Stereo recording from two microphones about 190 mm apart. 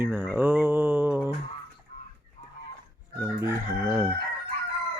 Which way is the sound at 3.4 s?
10° right (ahead or behind).